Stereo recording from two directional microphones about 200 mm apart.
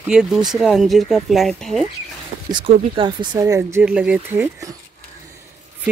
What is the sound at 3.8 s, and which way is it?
Speech, 5° right (ahead or behind).